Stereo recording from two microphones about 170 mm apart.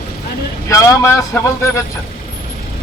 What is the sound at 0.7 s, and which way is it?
Speech, 20° left (ahead or behind).